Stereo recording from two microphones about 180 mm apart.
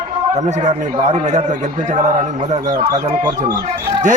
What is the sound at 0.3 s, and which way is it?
A man's voice, 40° right (ahead or behind).